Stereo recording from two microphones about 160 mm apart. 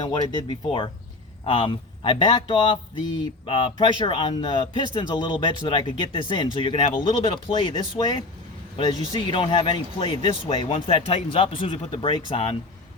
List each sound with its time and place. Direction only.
0.0 s speech: 30° left (ahead or behind)
12.1 s speech: 30° left (ahead or behind)